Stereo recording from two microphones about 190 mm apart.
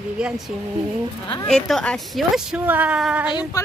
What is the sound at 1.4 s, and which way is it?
A woman's voice, centre (ahead or behind).